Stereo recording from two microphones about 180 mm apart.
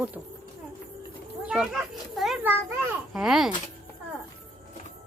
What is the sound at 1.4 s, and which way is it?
A child's voice, 5° right (ahead or behind).